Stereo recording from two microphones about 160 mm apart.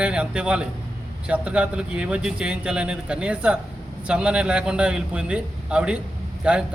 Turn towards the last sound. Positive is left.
turn(degrees=-5)  # may be behind; listen again after turning